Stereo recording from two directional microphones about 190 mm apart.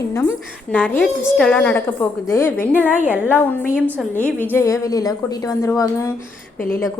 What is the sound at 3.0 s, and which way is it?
A woman's voice, 10° right (ahead or behind).